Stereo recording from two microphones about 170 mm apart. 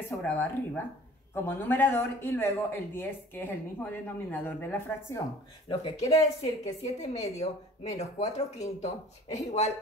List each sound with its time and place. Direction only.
0.1 s a woman's voice: 10° left (ahead or behind)
7.8 s speech: 40° left (ahead or behind)